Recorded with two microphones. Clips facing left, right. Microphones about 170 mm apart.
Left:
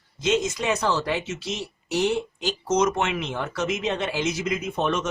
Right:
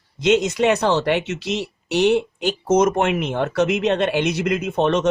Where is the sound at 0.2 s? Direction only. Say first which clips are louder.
Right 7 dB; 65° right (ahead or behind).